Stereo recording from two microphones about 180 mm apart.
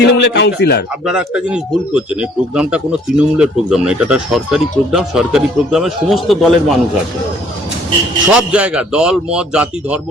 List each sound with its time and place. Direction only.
0.0 s speech: 70° left (ahead or behind)
1.0 s speech: 5° right (ahead or behind)
8.4 s speech: 5° right (ahead or behind)